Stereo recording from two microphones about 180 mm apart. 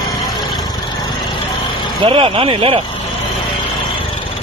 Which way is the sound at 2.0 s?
30° right (ahead or behind).